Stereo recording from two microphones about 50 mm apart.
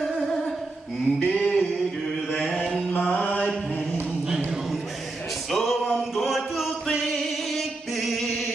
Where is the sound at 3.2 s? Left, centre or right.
Left.